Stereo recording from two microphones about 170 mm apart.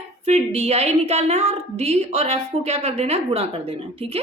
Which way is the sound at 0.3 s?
40° right (ahead or behind).